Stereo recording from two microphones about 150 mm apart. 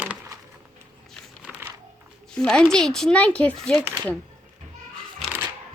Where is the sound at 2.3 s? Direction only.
5° left (ahead or behind).